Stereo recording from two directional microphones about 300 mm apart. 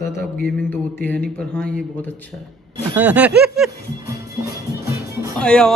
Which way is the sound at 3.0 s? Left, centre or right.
Centre.